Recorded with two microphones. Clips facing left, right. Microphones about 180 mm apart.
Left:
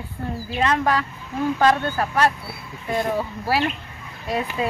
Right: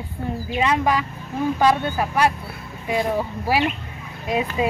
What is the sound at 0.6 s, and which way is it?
Speech, 10° right (ahead or behind).